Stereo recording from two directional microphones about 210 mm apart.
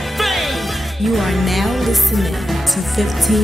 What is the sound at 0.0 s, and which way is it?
Music, centre (ahead or behind).